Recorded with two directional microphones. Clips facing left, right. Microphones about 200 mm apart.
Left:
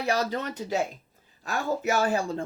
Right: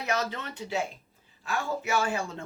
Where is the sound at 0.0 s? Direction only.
35° left (ahead or behind).